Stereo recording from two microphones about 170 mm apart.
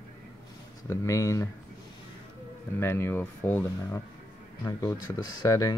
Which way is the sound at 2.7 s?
15° left (ahead or behind).